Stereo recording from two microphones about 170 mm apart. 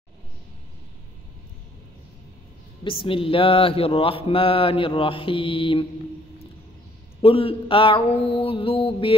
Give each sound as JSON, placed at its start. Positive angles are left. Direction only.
{"t": 2.8, "sound": "mantra", "side_deg": 30}
{"t": 7.2, "sound": "mantra", "side_deg": 35}